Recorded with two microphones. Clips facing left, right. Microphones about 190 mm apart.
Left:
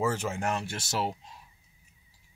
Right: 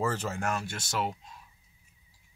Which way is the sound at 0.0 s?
10° left (ahead or behind).